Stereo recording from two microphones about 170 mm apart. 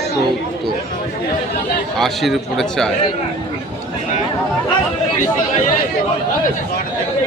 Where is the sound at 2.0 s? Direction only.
Centre (ahead or behind).